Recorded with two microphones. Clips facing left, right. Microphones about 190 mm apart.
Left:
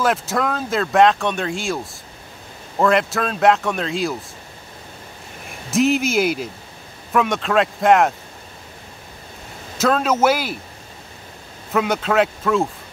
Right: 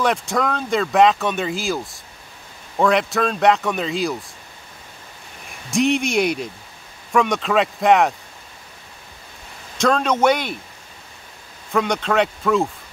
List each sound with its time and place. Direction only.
0.0 s speech: centre (ahead or behind)
2.8 s speech: centre (ahead or behind)
5.7 s speech: centre (ahead or behind)
9.8 s speech: 5° left (ahead or behind)
11.7 s speech: 5° left (ahead or behind)